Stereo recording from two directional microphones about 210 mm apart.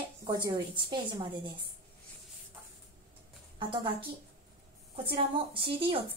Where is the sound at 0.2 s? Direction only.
15° right (ahead or behind).